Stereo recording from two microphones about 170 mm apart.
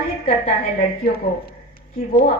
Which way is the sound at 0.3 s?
55° left (ahead or behind).